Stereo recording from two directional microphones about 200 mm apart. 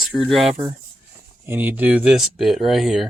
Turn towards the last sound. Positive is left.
turn(degrees=0)  # may be behind; listen again after turning